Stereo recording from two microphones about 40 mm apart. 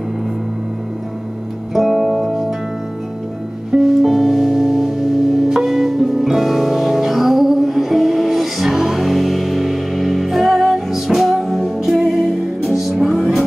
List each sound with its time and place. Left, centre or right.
1.7 s music: centre
3.7 s music: centre